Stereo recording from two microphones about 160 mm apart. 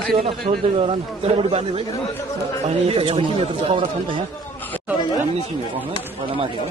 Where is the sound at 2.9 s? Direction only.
30° right (ahead or behind).